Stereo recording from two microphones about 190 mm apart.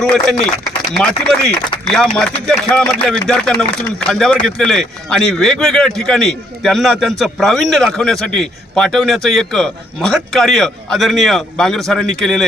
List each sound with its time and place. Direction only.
0.0 s speech: centre (ahead or behind)
1.9 s speech: 5° left (ahead or behind)